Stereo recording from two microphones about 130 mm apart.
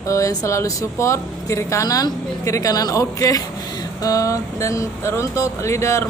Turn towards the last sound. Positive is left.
turn(degrees=20)  # may be behind; listen again after turning